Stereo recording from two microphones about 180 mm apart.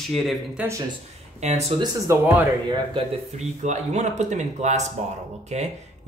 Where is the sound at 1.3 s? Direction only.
40° right (ahead or behind).